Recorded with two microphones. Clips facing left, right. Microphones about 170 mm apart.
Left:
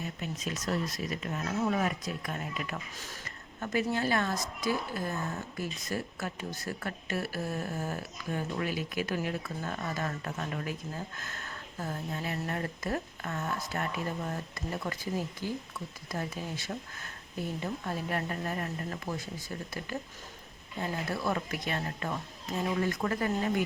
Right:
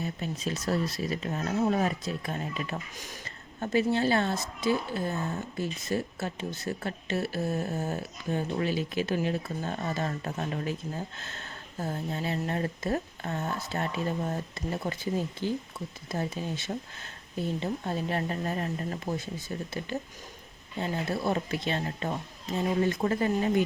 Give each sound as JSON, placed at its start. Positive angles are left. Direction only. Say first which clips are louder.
{"t": 0.0, "sound": "speech", "louder": "right 4 dB", "side_deg": -30}
{"t": 2.9, "sound": "speech", "louder": "right 2 dB", "side_deg": -15}
{"t": 3.2, "sound": "a woman's voice", "louder": "right 4 dB", "side_deg": -25}